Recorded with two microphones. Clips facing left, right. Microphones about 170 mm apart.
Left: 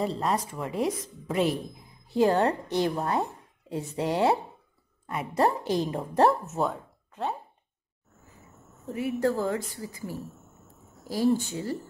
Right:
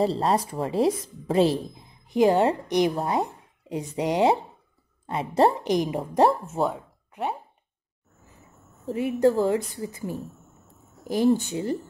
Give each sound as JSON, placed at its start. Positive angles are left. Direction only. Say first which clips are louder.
{"t": 0.0, "sound": "speech", "louder": "right 5 dB", "side_deg": -30}
{"t": 2.0, "sound": "a woman's voice", "louder": "right 3 dB", "side_deg": -15}
{"t": 5.7, "sound": "a woman's voice", "louder": "right 3 dB", "side_deg": -15}
{"t": 6.4, "sound": "a woman's voice", "louder": "right 3 dB", "side_deg": -30}
{"t": 8.8, "sound": "a woman's voice", "louder": "right 5 dB", "side_deg": -25}
{"t": 11.3, "sound": "a woman's voice", "louder": "right 3 dB", "side_deg": -20}